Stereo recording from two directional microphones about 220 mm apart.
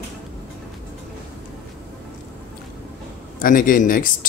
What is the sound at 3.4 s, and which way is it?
Speech, 40° left (ahead or behind).